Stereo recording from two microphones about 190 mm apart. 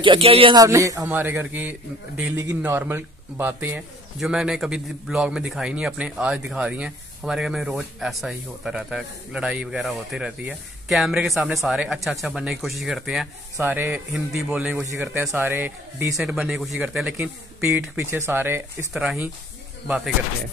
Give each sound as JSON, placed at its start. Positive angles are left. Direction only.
{"t": 0.0, "sound": "speech", "side_deg": -30}
{"t": 0.7, "sound": "a man's voice", "side_deg": -15}